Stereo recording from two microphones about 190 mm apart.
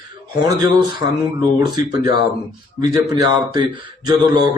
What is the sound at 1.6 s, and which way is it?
A man's voice, 20° right (ahead or behind).